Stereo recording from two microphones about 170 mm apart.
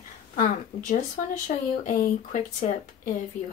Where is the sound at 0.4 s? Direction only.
55° left (ahead or behind).